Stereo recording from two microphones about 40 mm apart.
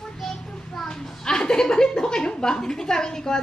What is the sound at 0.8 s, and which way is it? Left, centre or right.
A woman's voice, centre.